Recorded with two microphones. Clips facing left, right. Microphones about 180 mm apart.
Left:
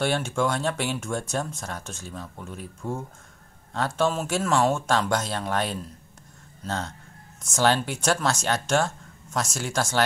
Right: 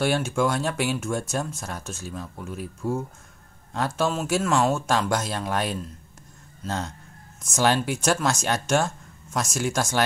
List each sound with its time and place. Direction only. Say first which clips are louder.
0.0 s speech: right 2 dB; 10° right (ahead or behind)
7.4 s speech: even; 10° right (ahead or behind)